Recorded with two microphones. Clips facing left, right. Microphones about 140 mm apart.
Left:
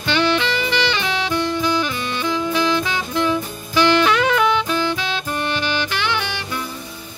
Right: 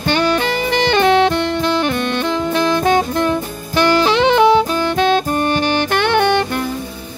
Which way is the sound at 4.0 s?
30° right (ahead or behind).